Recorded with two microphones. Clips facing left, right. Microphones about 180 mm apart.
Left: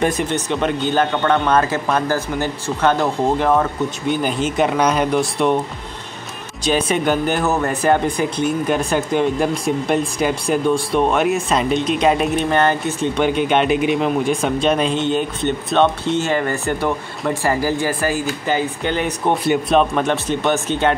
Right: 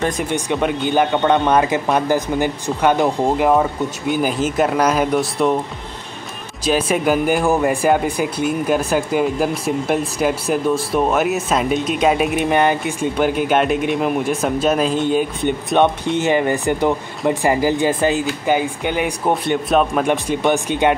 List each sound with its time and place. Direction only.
0.2 s speech: 10° right (ahead or behind)
6.6 s speech: 5° right (ahead or behind)
18.5 s speech: 10° right (ahead or behind)
19.3 s speech: centre (ahead or behind)
19.9 s speech: 10° right (ahead or behind)